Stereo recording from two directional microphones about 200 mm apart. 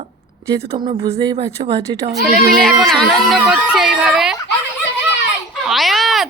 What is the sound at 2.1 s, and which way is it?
Speech, centre (ahead or behind).